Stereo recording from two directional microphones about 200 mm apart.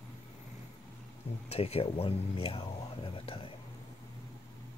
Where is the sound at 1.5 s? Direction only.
30° left (ahead or behind).